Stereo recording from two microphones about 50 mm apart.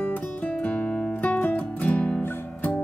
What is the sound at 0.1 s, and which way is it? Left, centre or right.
Music, left.